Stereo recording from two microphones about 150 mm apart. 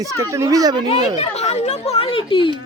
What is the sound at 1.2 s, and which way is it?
Speech, 45° left (ahead or behind).